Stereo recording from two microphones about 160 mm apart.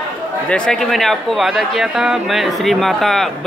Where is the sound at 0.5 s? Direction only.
5° left (ahead or behind).